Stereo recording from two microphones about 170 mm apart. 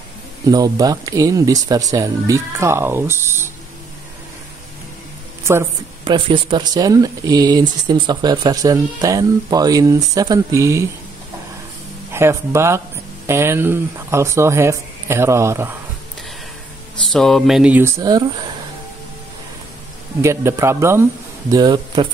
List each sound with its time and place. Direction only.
0.5 s speech: 20° right (ahead or behind)
6.0 s speech: 30° right (ahead or behind)
12.1 s speech: 15° right (ahead or behind)
17.1 s speech: centre (ahead or behind); by 18.2 s 20° right (ahead or behind)
20.2 s speech: 15° right (ahead or behind)